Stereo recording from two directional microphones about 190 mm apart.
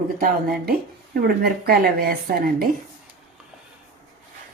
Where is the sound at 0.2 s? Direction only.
50° right (ahead or behind).